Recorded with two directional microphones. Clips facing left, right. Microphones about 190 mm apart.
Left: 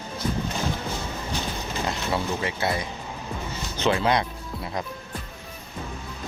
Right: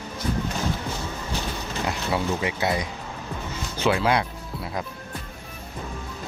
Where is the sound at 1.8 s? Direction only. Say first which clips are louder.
Right 2 dB; 15° right (ahead or behind).